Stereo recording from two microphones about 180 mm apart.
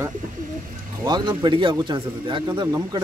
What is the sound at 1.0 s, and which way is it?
Speech, 25° right (ahead or behind).